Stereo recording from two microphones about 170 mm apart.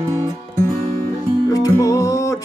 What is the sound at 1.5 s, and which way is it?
Music, 20° left (ahead or behind).